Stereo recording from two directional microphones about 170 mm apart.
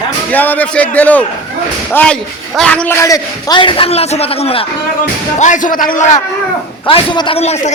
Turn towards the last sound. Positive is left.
turn(degrees=40)  # may be behind; listen again after turning